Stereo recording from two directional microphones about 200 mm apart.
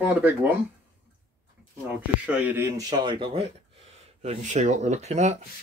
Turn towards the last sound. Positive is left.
turn(degrees=-35)  # may be behind; listen again after turning